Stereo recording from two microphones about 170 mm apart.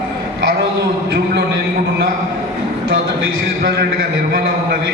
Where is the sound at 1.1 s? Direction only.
75° right (ahead or behind).